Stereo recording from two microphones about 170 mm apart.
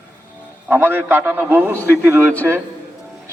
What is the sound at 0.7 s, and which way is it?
A man's voice, 15° right (ahead or behind).